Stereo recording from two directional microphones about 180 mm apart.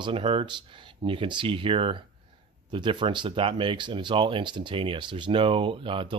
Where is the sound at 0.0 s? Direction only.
30° right (ahead or behind).